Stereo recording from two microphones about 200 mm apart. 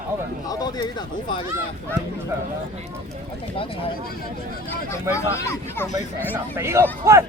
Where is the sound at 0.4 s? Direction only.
20° left (ahead or behind).